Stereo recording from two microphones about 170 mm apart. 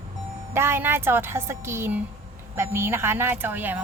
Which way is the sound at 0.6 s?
15° right (ahead or behind).